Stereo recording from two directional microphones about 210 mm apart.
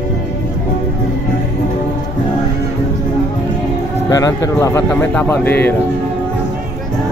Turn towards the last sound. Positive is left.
turn(degrees=10)  # may be behind; listen again after turning